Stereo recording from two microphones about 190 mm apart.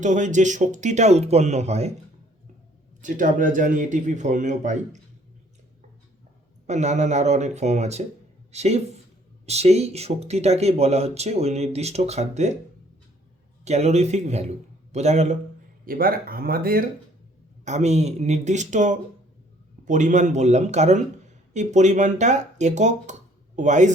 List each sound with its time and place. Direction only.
0.0 s speech: 40° right (ahead or behind)
3.0 s a man's voice: 45° right (ahead or behind)
6.7 s speech: 40° right (ahead or behind)
13.7 s speech: 35° right (ahead or behind)
15.9 s a man's voice: 50° right (ahead or behind)
17.7 s speech: 35° right (ahead or behind)